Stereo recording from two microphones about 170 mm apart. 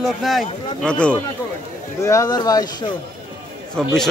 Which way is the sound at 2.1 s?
20° left (ahead or behind).